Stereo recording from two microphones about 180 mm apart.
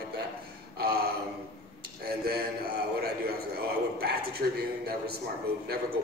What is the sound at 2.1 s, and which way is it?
A man's voice, 60° right (ahead or behind).